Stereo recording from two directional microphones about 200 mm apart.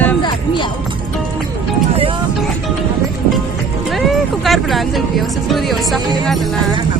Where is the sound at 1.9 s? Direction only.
25° right (ahead or behind).